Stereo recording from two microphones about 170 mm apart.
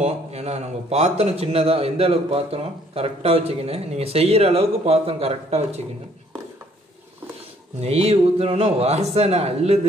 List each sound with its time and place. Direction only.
0.0 s a man's voice: 40° right (ahead or behind)
7.8 s a man's voice: 40° right (ahead or behind)